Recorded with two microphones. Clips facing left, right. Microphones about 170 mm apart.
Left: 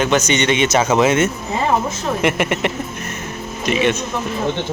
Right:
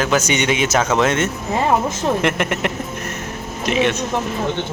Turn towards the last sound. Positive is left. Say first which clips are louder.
# left 1 dB
turn(degrees=0)  # may be behind; listen again after turning